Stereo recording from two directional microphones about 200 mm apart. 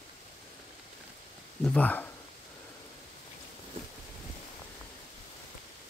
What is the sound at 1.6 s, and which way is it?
Speech, 5° left (ahead or behind).